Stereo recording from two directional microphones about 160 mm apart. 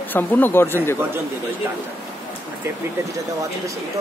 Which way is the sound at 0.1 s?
10° left (ahead or behind).